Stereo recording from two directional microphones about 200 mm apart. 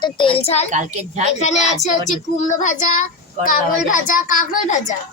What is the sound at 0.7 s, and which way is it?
Speech, 35° right (ahead or behind).